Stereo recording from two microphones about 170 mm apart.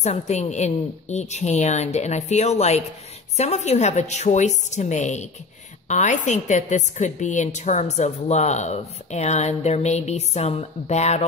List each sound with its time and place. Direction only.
0.0 s a woman's voice: 40° left (ahead or behind)